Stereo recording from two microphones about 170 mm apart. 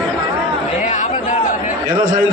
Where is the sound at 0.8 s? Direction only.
45° left (ahead or behind).